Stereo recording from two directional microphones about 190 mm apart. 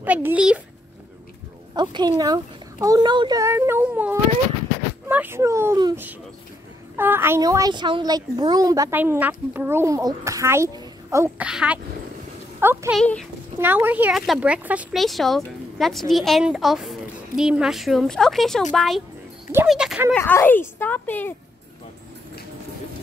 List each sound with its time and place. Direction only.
0.0 s a child's voice: 10° right (ahead or behind)
1.8 s a child's voice: 25° right (ahead or behind)
13.0 s speech: 5° left (ahead or behind)
13.6 s speech: 10° right (ahead or behind)
20.2 s speech: 10° left (ahead or behind)